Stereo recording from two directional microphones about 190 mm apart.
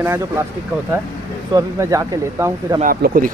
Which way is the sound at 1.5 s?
15° right (ahead or behind).